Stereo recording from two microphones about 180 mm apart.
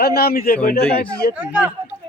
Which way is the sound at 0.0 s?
60° left (ahead or behind).